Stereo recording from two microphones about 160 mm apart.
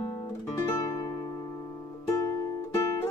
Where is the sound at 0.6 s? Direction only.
20° left (ahead or behind).